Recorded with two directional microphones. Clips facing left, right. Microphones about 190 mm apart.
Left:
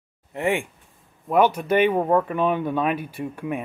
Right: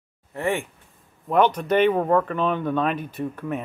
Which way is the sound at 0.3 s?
15° left (ahead or behind).